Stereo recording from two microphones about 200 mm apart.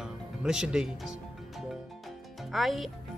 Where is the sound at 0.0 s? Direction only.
5° right (ahead or behind).